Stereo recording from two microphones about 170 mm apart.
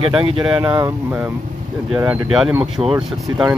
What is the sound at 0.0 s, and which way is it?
Speech, 35° right (ahead or behind).